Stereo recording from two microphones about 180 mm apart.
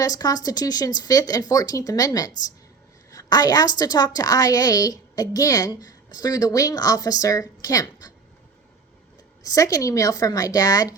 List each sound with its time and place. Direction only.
0.0 s a woman's voice: 20° left (ahead or behind)
9.4 s a woman's voice: 20° left (ahead or behind)